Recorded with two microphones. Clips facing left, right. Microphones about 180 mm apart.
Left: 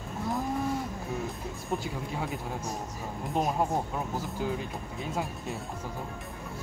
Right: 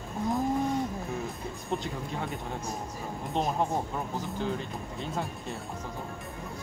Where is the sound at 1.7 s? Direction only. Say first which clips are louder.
Even; 5° left (ahead or behind).